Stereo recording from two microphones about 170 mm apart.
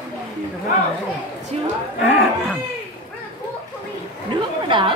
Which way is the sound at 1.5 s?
35° right (ahead or behind).